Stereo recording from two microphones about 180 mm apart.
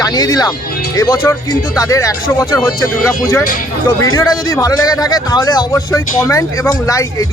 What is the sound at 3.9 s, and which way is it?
Speech, 20° left (ahead or behind).